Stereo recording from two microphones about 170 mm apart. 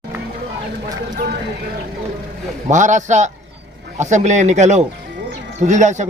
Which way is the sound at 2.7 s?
45° right (ahead or behind).